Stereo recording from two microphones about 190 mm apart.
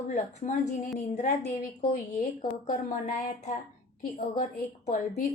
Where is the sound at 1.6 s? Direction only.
45° left (ahead or behind).